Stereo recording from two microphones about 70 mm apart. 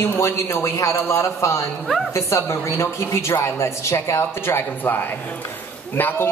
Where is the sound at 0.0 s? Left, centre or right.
Left.